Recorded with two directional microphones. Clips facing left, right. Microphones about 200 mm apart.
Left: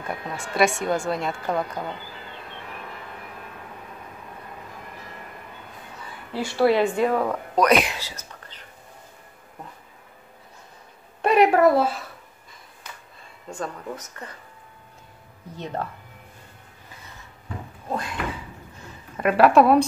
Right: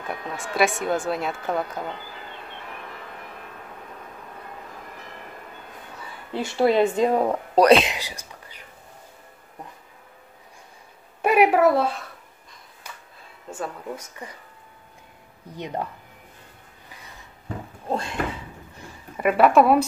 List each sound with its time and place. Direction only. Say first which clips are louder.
0.1 s a woman's voice: even; centre (ahead or behind)
6.3 s speech: even; 20° right (ahead or behind)
7.9 s speech: right 2 dB; 15° right (ahead or behind)
11.2 s a woman's voice: left 1 dB; 10° right (ahead or behind)
13.5 s speech: even; 10° right (ahead or behind)
15.5 s speech: right 1 dB; 15° right (ahead or behind)
17.8 s a sound: right 2 dB; 25° right (ahead or behind)
18.8 s a sound: even; 10° right (ahead or behind)
19.3 s a woman's voice: left 1 dB; centre (ahead or behind)